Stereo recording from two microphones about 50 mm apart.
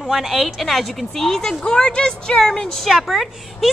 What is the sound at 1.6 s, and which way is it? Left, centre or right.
Speech, centre.